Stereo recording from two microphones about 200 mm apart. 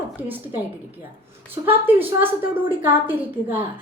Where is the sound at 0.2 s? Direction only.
10° right (ahead or behind).